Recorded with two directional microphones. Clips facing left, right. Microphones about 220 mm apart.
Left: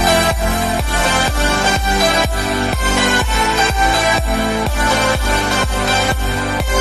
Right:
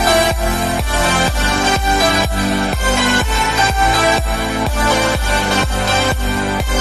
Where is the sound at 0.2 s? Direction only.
Centre (ahead or behind).